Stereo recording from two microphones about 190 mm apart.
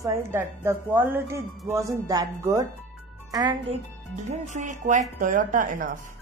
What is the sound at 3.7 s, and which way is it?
Speech, 40° right (ahead or behind).